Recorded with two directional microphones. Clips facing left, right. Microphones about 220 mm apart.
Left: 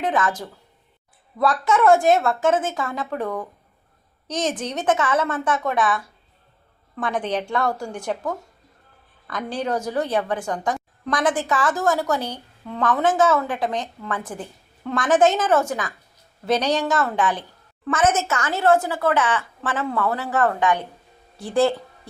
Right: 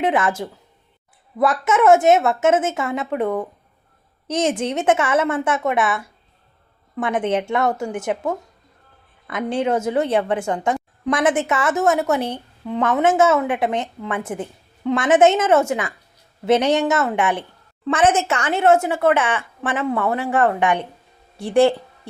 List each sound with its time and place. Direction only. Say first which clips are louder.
0.0 s a woman's voice: right 3 dB; 25° right (ahead or behind)